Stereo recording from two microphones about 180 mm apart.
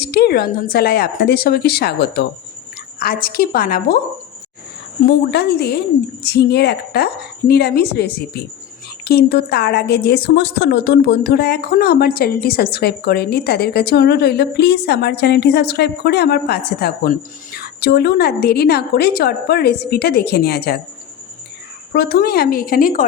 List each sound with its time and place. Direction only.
0.0 s a woman's voice: 60° left (ahead or behind)
5.0 s a woman's voice: 65° left (ahead or behind)
21.9 s a woman's voice: 60° left (ahead or behind)